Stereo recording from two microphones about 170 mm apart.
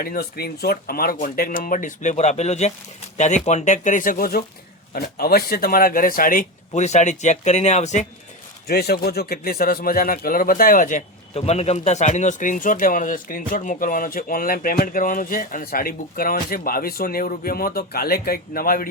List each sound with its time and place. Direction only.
0.0 s speech: 65° left (ahead or behind); by 8.0 s 45° left (ahead or behind)
8.6 s a man's voice: 65° left (ahead or behind)